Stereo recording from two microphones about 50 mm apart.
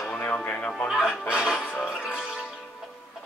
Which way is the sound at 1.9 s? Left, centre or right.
Centre.